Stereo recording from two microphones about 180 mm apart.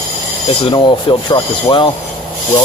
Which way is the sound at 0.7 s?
25° left (ahead or behind).